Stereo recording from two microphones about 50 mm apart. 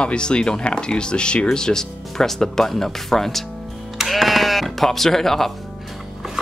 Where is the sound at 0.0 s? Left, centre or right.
Centre.